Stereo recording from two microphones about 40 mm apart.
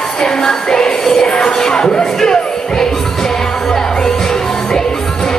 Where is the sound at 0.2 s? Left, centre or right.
Centre.